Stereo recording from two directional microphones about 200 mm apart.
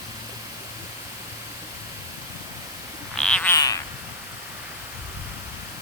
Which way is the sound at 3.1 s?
5° left (ahead or behind).